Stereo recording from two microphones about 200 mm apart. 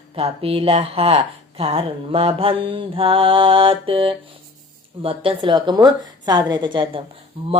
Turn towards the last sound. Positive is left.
turn(degrees=-25)  # may be behind; listen again after turning